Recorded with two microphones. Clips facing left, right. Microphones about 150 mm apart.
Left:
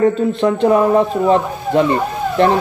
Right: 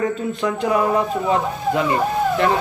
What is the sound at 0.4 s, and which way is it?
Speech, 30° left (ahead or behind).